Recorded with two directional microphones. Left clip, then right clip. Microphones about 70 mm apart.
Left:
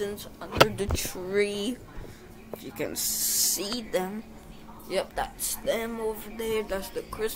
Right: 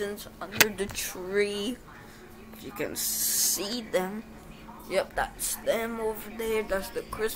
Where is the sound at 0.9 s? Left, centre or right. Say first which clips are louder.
Left 1 dB; left.